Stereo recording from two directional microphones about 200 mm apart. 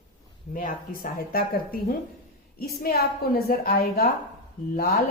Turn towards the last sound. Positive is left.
turn(degrees=50)  # may be behind; listen again after turning